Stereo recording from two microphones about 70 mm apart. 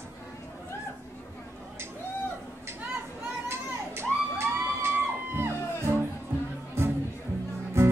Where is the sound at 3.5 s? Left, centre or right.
Right.